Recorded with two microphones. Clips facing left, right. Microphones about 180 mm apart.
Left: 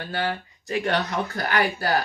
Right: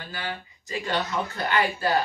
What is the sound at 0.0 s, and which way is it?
Speech, 55° left (ahead or behind).